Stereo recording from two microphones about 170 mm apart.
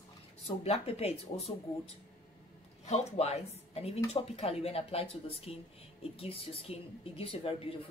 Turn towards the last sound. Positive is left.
turn(degrees=35)  # may be behind; listen again after turning